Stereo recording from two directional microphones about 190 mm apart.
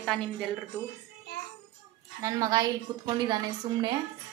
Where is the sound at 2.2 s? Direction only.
15° right (ahead or behind).